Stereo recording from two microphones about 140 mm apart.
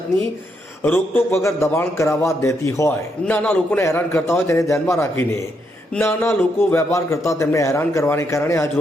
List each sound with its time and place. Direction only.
0.8 s a man's voice: 15° left (ahead or behind)